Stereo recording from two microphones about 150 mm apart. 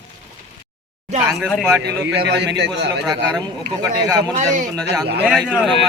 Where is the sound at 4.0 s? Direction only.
25° right (ahead or behind).